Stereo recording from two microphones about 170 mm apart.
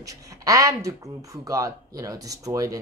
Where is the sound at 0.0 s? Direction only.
20° right (ahead or behind).